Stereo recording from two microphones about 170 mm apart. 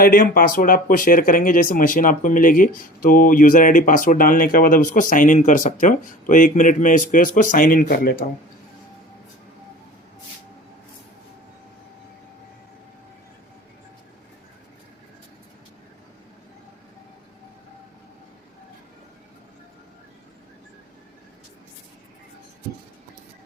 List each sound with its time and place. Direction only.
0.0 s speech: 55° left (ahead or behind)